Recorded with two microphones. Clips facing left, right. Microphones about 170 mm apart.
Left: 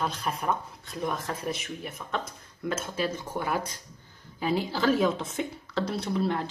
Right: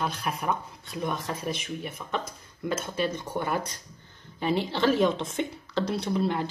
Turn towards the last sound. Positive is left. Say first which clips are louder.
# right 1 dB
turn(degrees=0)  # may be behind; listen again after turning